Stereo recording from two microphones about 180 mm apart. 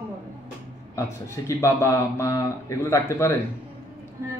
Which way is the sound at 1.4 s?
15° left (ahead or behind).